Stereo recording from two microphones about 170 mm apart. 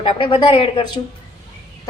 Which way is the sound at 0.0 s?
30° left (ahead or behind).